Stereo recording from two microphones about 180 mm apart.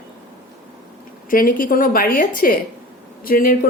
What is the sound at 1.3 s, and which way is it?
Speech, 50° left (ahead or behind).